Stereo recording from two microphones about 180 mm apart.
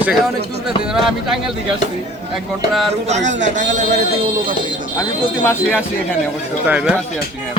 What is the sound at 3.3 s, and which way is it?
Speech, 40° right (ahead or behind).